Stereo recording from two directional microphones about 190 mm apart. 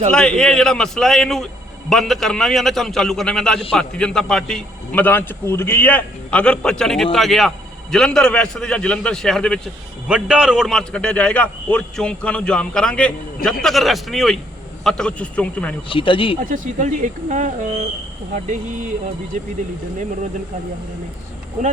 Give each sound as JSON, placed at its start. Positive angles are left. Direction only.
{"t": 0.1, "sound": "a man's voice", "side_deg": 5}
{"t": 15.9, "sound": "speech", "side_deg": 25}
{"t": 16.4, "sound": "speech", "side_deg": -45}